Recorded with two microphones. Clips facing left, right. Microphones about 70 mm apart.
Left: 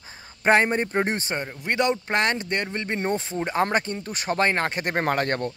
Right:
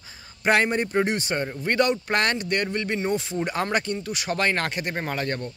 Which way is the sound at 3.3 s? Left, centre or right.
Left.